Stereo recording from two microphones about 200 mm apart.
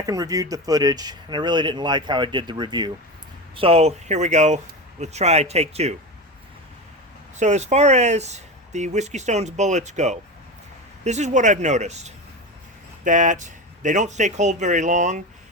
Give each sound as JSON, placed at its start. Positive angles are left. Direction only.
{"t": 0.0, "sound": "speech", "side_deg": -20}
{"t": 7.3, "sound": "speech", "side_deg": -35}